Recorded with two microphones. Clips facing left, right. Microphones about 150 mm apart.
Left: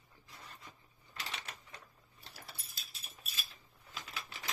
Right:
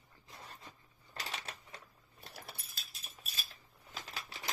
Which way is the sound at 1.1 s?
35° right (ahead or behind).